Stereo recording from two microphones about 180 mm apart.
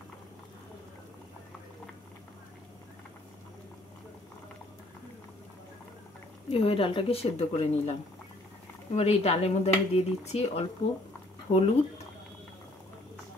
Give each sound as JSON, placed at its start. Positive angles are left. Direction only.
{"t": 6.5, "sound": "speech", "side_deg": 30}